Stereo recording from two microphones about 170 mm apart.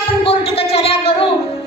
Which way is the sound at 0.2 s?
35° left (ahead or behind).